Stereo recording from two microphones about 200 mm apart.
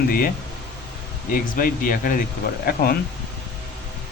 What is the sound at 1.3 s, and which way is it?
Speech, 45° left (ahead or behind).